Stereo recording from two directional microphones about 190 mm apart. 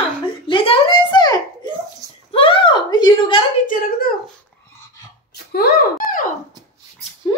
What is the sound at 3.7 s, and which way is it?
Speech, 50° left (ahead or behind).